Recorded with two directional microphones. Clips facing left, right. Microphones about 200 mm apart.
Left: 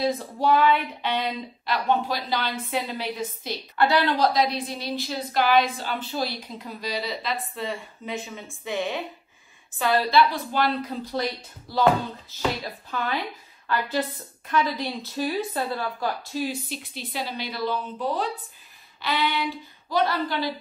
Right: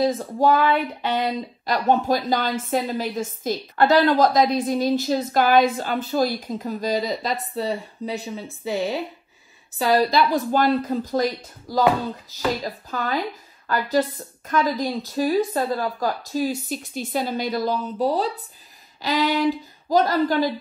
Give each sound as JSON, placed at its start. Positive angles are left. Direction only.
{"t": 0.0, "sound": "speech", "side_deg": -45}
{"t": 10.1, "sound": "speech", "side_deg": -45}
{"t": 11.8, "sound": "speech", "side_deg": -5}
{"t": 12.6, "sound": "speech", "side_deg": -40}